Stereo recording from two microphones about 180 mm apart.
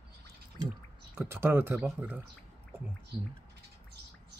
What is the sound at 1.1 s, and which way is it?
Speech, 15° right (ahead or behind).